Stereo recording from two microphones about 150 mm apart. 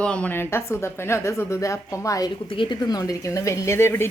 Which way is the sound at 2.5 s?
35° left (ahead or behind).